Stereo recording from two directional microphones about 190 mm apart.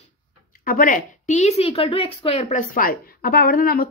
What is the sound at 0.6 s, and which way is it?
A woman's voice, 45° left (ahead or behind).